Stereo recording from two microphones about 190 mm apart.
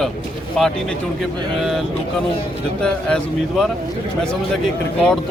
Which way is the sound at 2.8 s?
5° left (ahead or behind).